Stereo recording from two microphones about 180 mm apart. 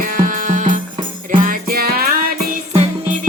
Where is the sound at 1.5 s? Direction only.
55° right (ahead or behind).